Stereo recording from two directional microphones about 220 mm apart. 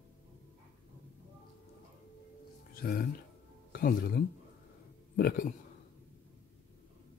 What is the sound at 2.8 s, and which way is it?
A man's voice, 45° left (ahead or behind).